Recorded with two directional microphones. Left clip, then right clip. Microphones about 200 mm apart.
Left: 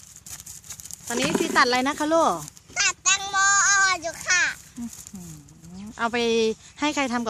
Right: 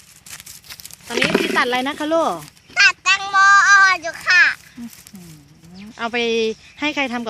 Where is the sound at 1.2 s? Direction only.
30° right (ahead or behind).